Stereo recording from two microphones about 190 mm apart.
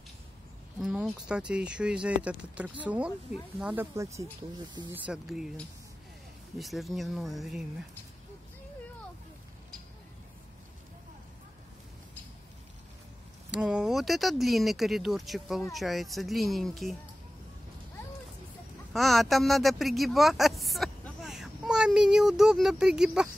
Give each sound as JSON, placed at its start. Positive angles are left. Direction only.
{"t": 0.7, "sound": "speech", "side_deg": 0}
{"t": 3.9, "sound": "speech", "side_deg": -15}
{"t": 4.9, "sound": "speech", "side_deg": -5}
{"t": 13.5, "sound": "speech", "side_deg": -5}
{"t": 18.9, "sound": "speech", "side_deg": 0}